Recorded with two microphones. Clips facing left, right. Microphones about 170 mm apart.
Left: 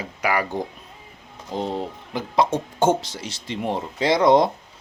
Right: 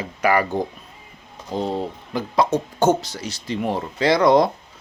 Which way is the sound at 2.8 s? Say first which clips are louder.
Right 1 dB; 25° left (ahead or behind).